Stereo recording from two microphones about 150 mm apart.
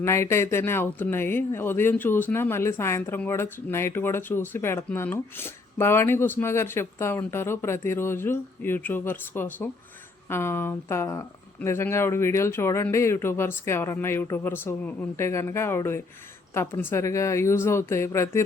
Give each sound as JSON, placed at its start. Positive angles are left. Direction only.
{"t": 0.0, "sound": "a woman's voice", "side_deg": 20}